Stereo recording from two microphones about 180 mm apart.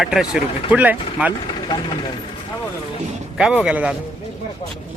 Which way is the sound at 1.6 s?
25° left (ahead or behind).